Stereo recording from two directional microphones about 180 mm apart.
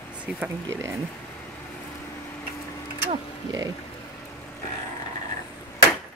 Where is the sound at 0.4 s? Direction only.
15° right (ahead or behind).